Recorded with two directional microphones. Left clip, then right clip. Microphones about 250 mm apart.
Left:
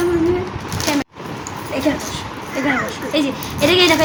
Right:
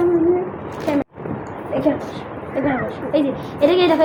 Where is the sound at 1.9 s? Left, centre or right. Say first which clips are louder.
Left 1 dB; left.